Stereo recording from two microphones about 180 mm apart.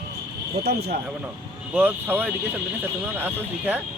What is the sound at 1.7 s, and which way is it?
Speech, 10° right (ahead or behind).